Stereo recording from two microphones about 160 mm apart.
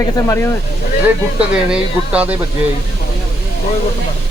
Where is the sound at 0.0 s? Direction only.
20° left (ahead or behind).